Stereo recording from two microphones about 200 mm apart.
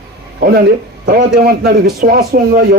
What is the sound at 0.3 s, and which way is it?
Speech, 50° right (ahead or behind).